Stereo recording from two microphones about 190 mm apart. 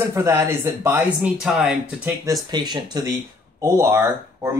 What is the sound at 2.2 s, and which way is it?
Speech, 20° right (ahead or behind).